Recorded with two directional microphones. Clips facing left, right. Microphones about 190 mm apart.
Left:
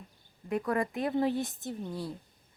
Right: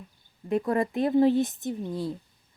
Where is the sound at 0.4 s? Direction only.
25° right (ahead or behind).